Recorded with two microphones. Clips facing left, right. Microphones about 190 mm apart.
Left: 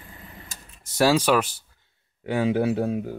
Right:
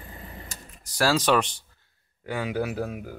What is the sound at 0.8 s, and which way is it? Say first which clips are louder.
Speech: left 4 dB; 20° left (ahead or behind).